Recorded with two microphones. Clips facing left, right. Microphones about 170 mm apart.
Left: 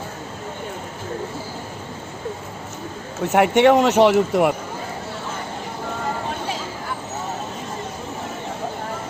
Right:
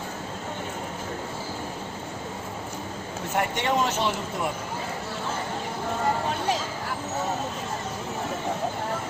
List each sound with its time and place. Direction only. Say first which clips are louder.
3.3 s speech: left 11 dB; 70° left (ahead or behind)